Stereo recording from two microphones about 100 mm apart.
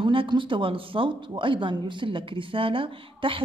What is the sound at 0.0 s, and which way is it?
Speech, 55° right (ahead or behind).